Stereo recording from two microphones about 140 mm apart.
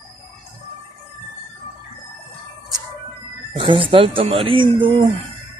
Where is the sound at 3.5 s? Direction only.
35° right (ahead or behind).